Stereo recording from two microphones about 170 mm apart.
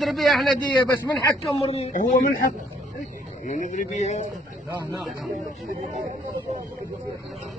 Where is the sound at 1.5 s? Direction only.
35° left (ahead or behind).